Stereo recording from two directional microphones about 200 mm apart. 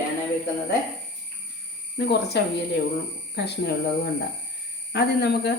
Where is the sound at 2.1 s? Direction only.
55° left (ahead or behind).